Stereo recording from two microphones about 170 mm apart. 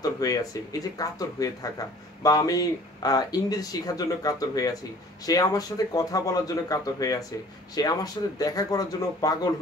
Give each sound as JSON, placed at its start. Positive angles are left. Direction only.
{"t": 0.0, "sound": "speech", "side_deg": 20}